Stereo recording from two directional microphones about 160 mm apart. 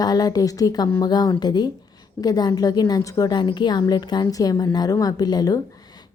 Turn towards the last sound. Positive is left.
turn(degrees=25)  # may be behind; listen again after turning